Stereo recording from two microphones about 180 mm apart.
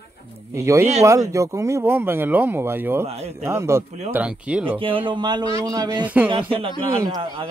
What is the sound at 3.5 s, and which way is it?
Speech, 15° right (ahead or behind).